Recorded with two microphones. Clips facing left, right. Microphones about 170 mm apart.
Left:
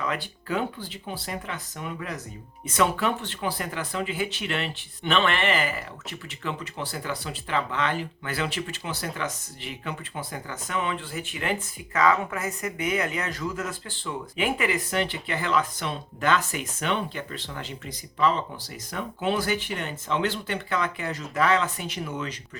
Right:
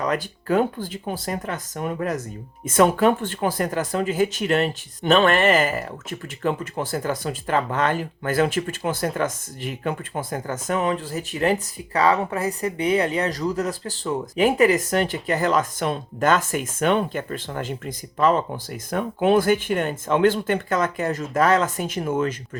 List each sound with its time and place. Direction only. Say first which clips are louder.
0.0 s speech: right 6 dB; 45° right (ahead or behind)